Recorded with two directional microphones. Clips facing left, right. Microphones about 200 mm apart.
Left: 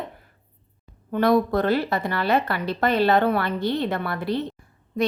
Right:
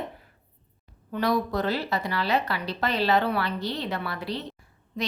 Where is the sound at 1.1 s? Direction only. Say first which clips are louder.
Left 6 dB; 55° left (ahead or behind).